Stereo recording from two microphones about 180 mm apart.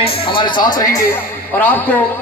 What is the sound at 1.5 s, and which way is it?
Speech, 10° left (ahead or behind).